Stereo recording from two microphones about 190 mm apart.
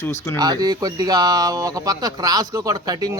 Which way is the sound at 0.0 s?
15° left (ahead or behind).